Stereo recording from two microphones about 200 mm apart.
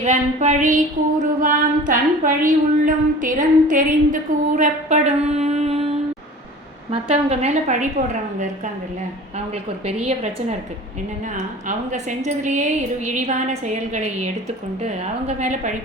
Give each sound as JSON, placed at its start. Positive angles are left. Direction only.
{"t": 0.0, "sound": "a woman's voice", "side_deg": -35}
{"t": 6.9, "sound": "a woman's voice", "side_deg": -30}
{"t": 9.8, "sound": "a woman's voice", "side_deg": -30}
{"t": 11.9, "sound": "a woman's voice", "side_deg": -35}